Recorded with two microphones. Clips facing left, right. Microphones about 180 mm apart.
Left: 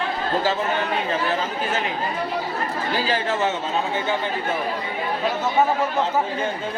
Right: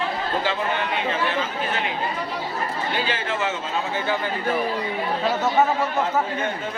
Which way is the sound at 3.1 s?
40° left (ahead or behind).